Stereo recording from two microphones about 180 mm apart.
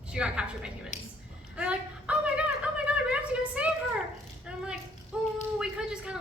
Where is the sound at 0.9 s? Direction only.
40° left (ahead or behind).